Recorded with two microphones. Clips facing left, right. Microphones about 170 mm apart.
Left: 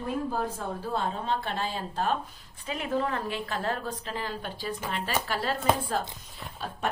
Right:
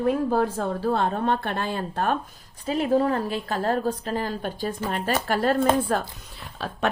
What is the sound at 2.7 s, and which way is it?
A woman's voice, 35° right (ahead or behind).